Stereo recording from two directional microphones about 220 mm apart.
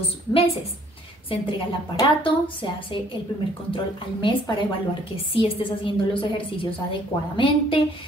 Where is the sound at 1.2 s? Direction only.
20° left (ahead or behind).